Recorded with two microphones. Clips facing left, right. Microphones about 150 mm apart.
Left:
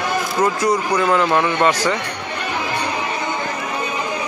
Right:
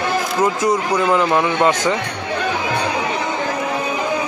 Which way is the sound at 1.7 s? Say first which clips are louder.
Right 1 dB; 20° right (ahead or behind).